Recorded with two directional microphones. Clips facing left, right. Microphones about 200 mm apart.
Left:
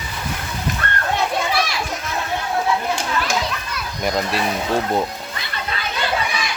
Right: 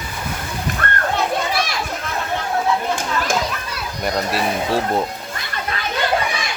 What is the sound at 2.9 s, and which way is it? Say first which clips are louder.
Children playing: right 1 dB; 50° right (ahead or behind).